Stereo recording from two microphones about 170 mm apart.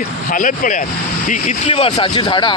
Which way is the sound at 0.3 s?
50° left (ahead or behind).